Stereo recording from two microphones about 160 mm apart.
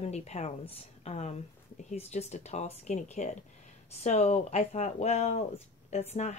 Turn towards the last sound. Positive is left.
turn(degrees=45)  # may be behind; listen again after turning